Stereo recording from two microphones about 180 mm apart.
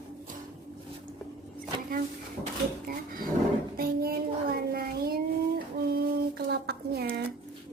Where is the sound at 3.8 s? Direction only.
55° right (ahead or behind).